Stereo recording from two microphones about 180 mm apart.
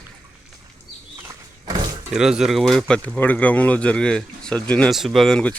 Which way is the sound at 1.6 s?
25° right (ahead or behind).